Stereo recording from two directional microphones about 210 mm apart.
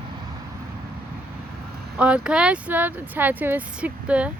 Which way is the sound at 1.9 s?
5° right (ahead or behind).